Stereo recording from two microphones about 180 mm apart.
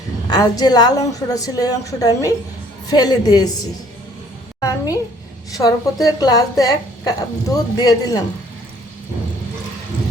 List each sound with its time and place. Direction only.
0.3 s a woman's voice: 20° left (ahead or behind)
5.5 s a woman's voice: 20° left (ahead or behind)